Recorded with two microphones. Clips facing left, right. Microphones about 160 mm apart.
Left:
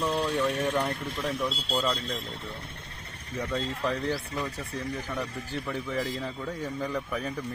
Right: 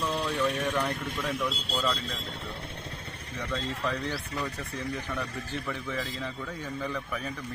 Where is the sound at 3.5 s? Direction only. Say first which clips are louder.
Left 1 dB; 35° left (ahead or behind).